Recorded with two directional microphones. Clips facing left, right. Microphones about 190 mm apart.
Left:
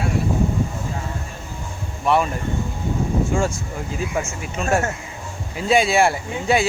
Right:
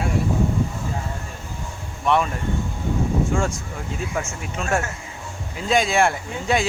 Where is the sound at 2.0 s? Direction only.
5° left (ahead or behind).